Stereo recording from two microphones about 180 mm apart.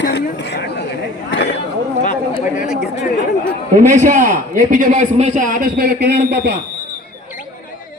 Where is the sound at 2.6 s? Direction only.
40° left (ahead or behind).